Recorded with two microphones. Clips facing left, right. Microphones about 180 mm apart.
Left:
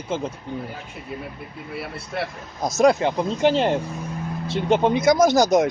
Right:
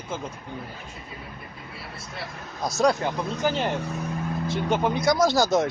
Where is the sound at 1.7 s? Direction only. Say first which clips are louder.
Left 12 dB; 60° left (ahead or behind).